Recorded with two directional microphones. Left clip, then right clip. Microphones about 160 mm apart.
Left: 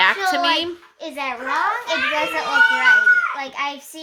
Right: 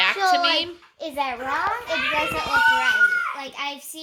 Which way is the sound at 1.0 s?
65° right (ahead or behind).